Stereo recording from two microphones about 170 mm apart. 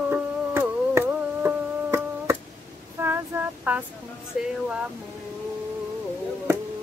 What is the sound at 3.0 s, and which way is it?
Female singing, 15° right (ahead or behind).